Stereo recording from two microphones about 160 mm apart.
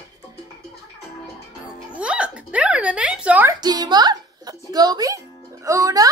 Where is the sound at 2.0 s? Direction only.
5° right (ahead or behind).